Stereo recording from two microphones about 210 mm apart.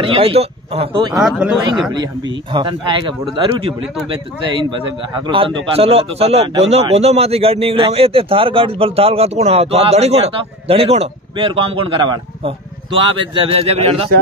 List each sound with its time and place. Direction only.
0.0 s a man's voice: 25° right (ahead or behind)
1.1 s speech: centre (ahead or behind)
1.9 s a man's voice: 20° right (ahead or behind)